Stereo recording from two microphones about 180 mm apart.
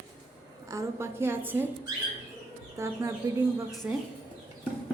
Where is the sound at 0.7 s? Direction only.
15° right (ahead or behind).